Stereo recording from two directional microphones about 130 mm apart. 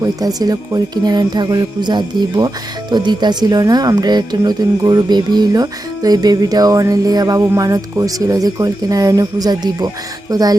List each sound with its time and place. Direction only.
0.0 s speech: 30° right (ahead or behind)